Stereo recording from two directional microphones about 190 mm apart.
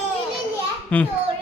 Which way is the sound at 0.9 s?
5° left (ahead or behind).